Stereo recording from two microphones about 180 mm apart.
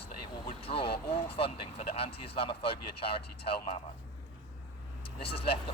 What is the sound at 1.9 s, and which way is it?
Speech, 35° left (ahead or behind).